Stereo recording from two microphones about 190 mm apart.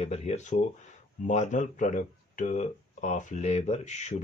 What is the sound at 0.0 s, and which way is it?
Speech, 35° left (ahead or behind).